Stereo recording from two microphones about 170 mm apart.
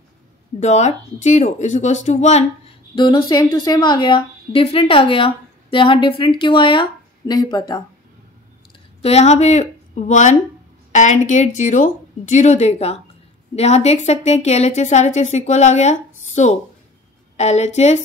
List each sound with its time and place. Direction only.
0.6 s a woman's voice: 45° left (ahead or behind)
3.0 s a woman's voice: 25° left (ahead or behind)
9.0 s a woman's voice: 40° left (ahead or behind)